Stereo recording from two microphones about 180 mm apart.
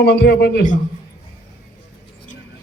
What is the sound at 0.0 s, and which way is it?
Speech, 65° left (ahead or behind).